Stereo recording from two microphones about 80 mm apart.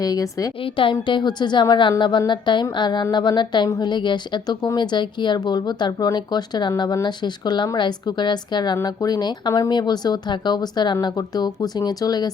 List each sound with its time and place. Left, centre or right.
0.0 s a woman's voice: left
0.6 s a woman's voice: left